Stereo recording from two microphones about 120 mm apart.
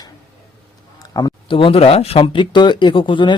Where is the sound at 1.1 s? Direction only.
30° left (ahead or behind).